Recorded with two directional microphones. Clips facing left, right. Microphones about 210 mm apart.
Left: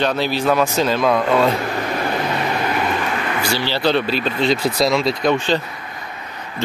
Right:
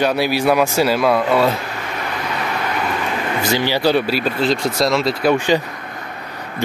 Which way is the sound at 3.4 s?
15° right (ahead or behind).